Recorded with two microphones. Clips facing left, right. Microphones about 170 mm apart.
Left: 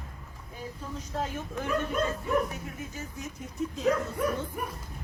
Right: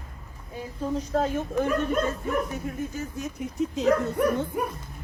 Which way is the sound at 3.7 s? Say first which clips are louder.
Right 5 dB; 75° right (ahead or behind).